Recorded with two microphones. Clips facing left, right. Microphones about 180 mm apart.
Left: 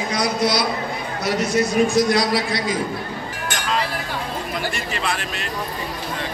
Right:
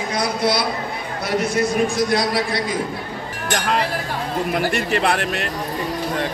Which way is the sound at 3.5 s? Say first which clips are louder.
Right 4 dB; 60° right (ahead or behind).